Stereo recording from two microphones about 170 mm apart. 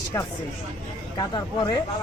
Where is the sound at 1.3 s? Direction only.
25° left (ahead or behind).